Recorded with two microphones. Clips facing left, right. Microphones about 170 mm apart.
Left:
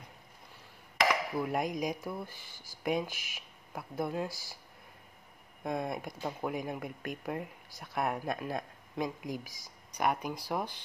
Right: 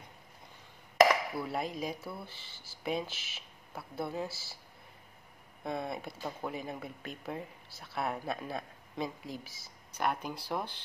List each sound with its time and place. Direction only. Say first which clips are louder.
1.3 s speech: left 3 dB; 15° left (ahead or behind)
5.6 s speech: left 2 dB; 5° right (ahead or behind)
5.9 s speech: left 2 dB; 10° left (ahead or behind)